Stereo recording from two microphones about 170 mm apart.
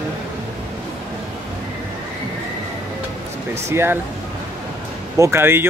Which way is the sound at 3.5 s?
15° right (ahead or behind).